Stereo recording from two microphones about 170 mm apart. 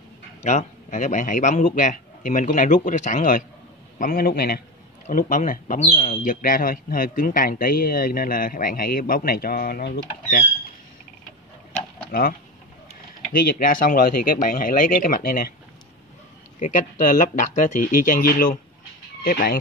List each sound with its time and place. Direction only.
0.4 s a man's voice: 40° left (ahead or behind); by 4.6 s 65° left (ahead or behind)
5.0 s speech: 50° left (ahead or behind); by 10.4 s 65° left (ahead or behind)
12.1 s speech: 60° left (ahead or behind)
16.5 s a man's voice: 50° left (ahead or behind)